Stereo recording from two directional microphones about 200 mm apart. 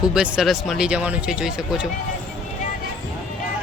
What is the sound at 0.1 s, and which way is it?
Speech, 5° right (ahead or behind).